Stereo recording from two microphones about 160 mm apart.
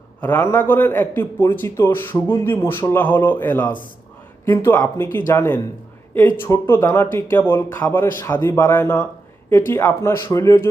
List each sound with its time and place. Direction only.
0.2 s a man's voice: 15° left (ahead or behind)